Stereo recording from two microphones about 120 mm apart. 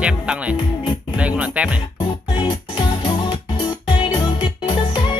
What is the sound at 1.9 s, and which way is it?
Music, 40° left (ahead or behind).